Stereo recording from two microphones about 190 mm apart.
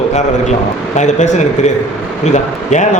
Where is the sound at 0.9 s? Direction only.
40° left (ahead or behind).